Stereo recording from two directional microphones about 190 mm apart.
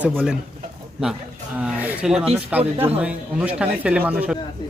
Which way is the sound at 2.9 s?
5° right (ahead or behind).